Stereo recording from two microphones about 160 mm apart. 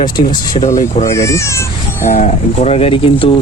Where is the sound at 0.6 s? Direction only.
50° left (ahead or behind).